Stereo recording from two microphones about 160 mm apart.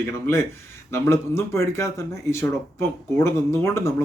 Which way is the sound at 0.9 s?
15° left (ahead or behind).